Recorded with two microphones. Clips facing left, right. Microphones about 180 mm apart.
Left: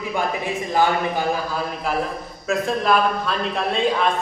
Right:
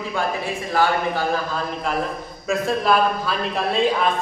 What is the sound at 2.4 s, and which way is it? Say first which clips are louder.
A man's voice: even; centre (ahead or behind).